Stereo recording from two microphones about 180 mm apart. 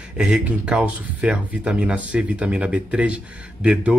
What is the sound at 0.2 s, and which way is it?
A man's voice, 5° right (ahead or behind).